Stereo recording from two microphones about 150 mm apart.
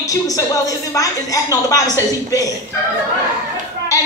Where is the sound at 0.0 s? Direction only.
25° left (ahead or behind).